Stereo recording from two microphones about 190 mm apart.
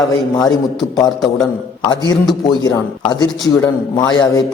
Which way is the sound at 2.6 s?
20° left (ahead or behind).